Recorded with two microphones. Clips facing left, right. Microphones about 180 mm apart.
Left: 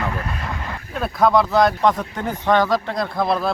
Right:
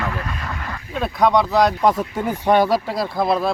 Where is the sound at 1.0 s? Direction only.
Centre (ahead or behind).